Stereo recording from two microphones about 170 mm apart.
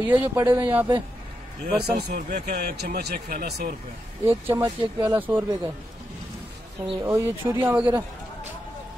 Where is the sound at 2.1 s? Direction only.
45° right (ahead or behind).